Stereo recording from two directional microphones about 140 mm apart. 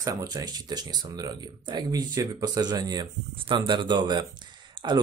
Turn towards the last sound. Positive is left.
turn(degrees=-35)  # may be behind; listen again after turning